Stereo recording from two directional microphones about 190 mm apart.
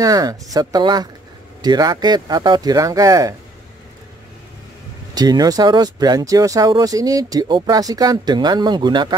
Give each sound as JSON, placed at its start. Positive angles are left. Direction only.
{"t": 0.0, "sound": "speech", "side_deg": -20}
{"t": 5.1, "sound": "speech", "side_deg": -20}